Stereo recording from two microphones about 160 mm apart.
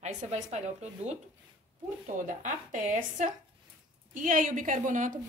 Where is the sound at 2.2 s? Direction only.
55° right (ahead or behind).